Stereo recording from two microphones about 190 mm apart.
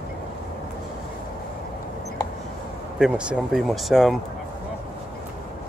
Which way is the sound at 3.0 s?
5° right (ahead or behind).